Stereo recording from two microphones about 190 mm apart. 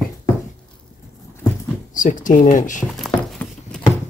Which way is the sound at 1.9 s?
45° left (ahead or behind).